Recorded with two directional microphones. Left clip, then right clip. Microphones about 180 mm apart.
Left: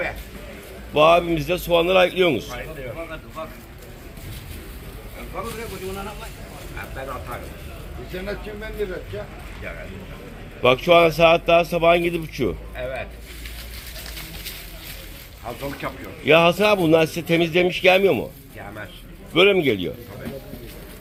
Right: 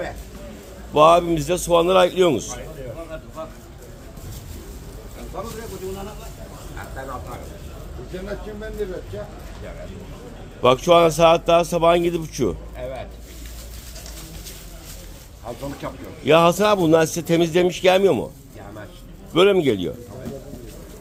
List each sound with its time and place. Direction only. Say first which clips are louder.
0.9 s a man's voice: right 2 dB; 20° right (ahead or behind)
10.6 s a man's voice: even; 20° right (ahead or behind)
15.8 s a man's voice: left 1 dB; 15° right (ahead or behind)
19.3 s a man's voice: even; 15° right (ahead or behind)